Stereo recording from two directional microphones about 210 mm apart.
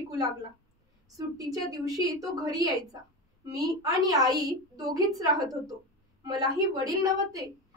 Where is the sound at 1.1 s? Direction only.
15° right (ahead or behind).